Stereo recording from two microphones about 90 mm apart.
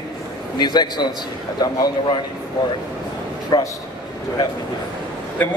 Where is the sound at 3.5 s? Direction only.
50° left (ahead or behind).